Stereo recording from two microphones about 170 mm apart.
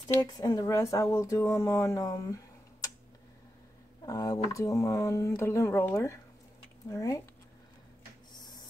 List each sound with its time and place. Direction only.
0.3 s a woman's voice: 25° left (ahead or behind)
4.0 s a woman's voice: 20° left (ahead or behind)
8.3 s a sound: 25° left (ahead or behind)